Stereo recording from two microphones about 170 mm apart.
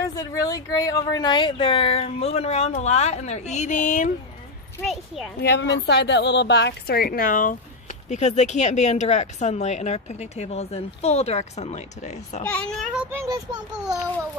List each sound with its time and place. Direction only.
0.0 s a woman's voice: 20° left (ahead or behind); by 4.1 s 50° left (ahead or behind)
4.8 s a child's voice: centre (ahead or behind)
5.4 s a woman's voice: 85° left; by 12.4 s 45° left (ahead or behind)
12.4 s a child's voice: 5° left (ahead or behind)
13.0 s a child's voice: 15° right (ahead or behind)